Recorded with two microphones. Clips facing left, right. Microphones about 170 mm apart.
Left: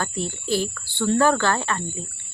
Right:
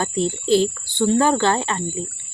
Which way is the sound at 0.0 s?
20° right (ahead or behind).